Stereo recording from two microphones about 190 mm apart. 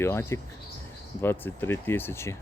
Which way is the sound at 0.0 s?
15° left (ahead or behind).